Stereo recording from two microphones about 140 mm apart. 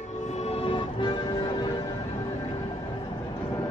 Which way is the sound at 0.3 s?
50° left (ahead or behind).